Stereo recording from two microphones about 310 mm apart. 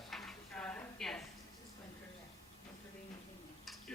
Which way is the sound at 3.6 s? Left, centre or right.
Centre.